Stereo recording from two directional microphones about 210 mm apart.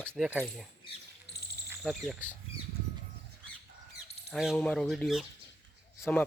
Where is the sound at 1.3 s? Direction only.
50° left (ahead or behind).